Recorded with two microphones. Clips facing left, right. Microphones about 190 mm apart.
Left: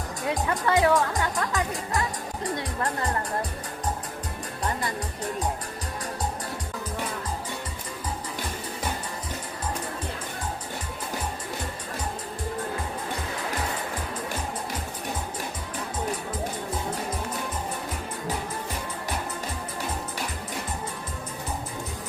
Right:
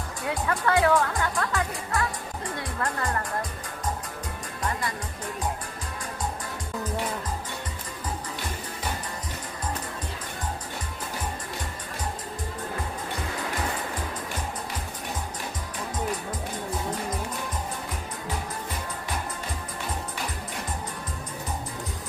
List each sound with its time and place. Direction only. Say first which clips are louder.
0.3 s speech: left 1 dB; 20° left (ahead or behind)